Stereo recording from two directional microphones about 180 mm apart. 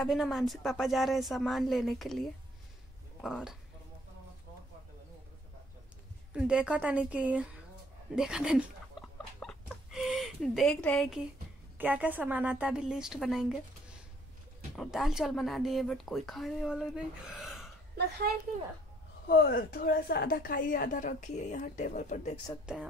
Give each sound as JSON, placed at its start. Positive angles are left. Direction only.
{"t": 0.0, "sound": "speech", "side_deg": 0}
{"t": 6.3, "sound": "a woman's voice", "side_deg": -5}
{"t": 9.4, "sound": "a sound", "side_deg": 0}
{"t": 11.8, "sound": "speech", "side_deg": -10}
{"t": 19.2, "sound": "a woman's voice", "side_deg": 55}
{"t": 22.7, "sound": "speech", "side_deg": -5}